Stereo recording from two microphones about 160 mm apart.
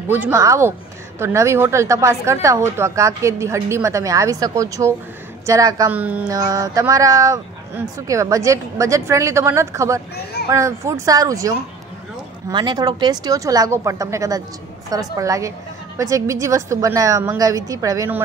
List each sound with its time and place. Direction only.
0.1 s a woman's voice: 15° right (ahead or behind)
5.9 s speech: 10° right (ahead or behind)
6.2 s a woman's voice: 20° right (ahead or behind)